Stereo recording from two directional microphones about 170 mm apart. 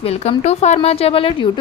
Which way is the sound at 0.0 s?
35° left (ahead or behind).